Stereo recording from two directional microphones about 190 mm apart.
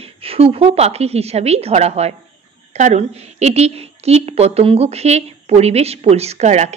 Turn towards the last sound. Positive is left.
turn(degrees=-35)  # may be behind; listen again after turning